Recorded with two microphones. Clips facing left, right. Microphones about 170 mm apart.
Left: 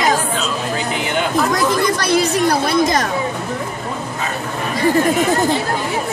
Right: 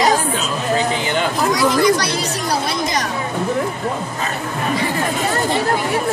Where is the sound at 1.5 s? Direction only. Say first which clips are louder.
Right 2 dB; 55° left (ahead or behind).